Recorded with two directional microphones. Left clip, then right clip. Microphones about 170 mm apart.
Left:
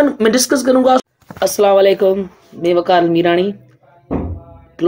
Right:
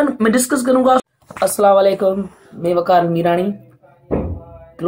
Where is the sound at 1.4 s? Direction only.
25° left (ahead or behind).